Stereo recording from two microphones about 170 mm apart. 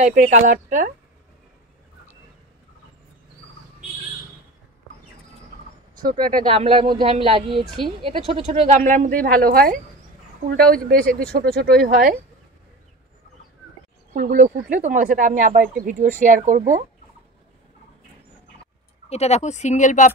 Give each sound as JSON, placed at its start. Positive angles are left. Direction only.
{"t": 0.0, "sound": "speech", "side_deg": -50}
{"t": 6.4, "sound": "speech", "side_deg": -35}
{"t": 8.6, "sound": "speech", "side_deg": -45}
{"t": 14.1, "sound": "speech", "side_deg": -55}
{"t": 19.0, "sound": "speech", "side_deg": 40}